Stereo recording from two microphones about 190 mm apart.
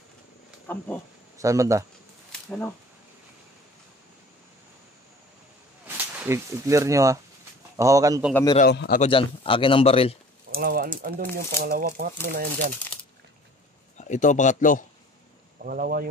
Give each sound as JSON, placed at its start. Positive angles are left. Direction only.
{"t": 0.7, "sound": "speech", "side_deg": 10}
{"t": 1.4, "sound": "speech", "side_deg": -15}
{"t": 6.1, "sound": "speech", "side_deg": -15}
{"t": 8.6, "sound": "a man's voice", "side_deg": 55}
{"t": 9.0, "sound": "a man's voice", "side_deg": 30}
{"t": 10.5, "sound": "speech", "side_deg": -50}
{"t": 13.9, "sound": "speech", "side_deg": 40}
{"t": 15.6, "sound": "speech", "side_deg": -50}